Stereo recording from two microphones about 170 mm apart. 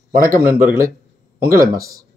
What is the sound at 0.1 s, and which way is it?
Speech, 55° right (ahead or behind).